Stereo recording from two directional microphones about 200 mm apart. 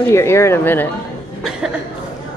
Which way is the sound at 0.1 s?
15° left (ahead or behind).